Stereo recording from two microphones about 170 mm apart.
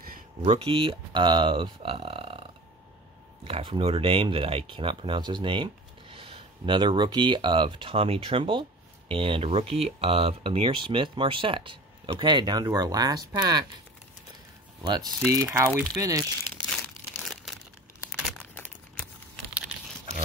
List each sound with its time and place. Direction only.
0.4 s speech: 35° right (ahead or behind)
14.8 s speech: 25° right (ahead or behind)
16.8 s crumpling: 5° left (ahead or behind)
18.4 s a sound: 10° left (ahead or behind)